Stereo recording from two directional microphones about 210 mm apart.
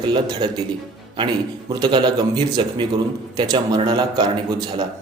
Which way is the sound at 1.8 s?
20° right (ahead or behind).